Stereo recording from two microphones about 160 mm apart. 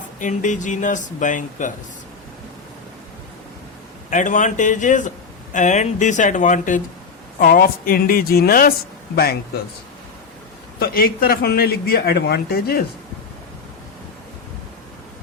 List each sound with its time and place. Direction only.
0.2 s speech: 50° left (ahead or behind)
4.1 s a man's voice: 55° left (ahead or behind); by 9.4 s 75° left (ahead or behind)
10.8 s a man's voice: 70° left (ahead or behind)